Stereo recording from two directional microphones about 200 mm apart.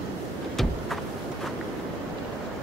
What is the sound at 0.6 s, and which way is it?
Vehicle, centre (ahead or behind).